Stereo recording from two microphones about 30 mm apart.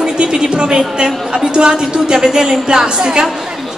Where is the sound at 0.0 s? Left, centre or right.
Right.